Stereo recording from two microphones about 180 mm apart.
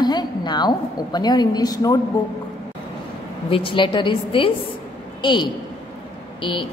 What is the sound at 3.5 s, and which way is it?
A woman's voice, 30° left (ahead or behind).